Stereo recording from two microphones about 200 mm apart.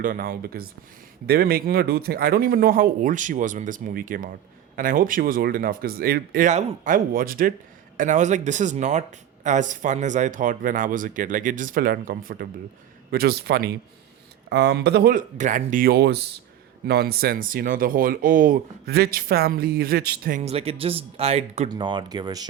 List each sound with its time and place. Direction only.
0.0 s speech: 45° right (ahead or behind)
20.4 s speech: 30° right (ahead or behind)